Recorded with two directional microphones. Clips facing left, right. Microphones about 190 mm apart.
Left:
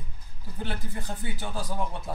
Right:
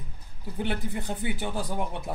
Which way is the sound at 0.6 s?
20° right (ahead or behind).